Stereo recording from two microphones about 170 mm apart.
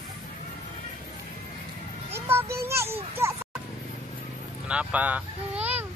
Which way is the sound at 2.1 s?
15° right (ahead or behind).